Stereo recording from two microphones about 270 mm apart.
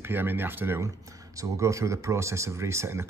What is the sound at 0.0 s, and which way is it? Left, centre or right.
Speech, centre.